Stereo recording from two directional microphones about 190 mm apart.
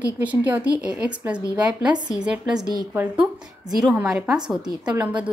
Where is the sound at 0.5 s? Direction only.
5° right (ahead or behind).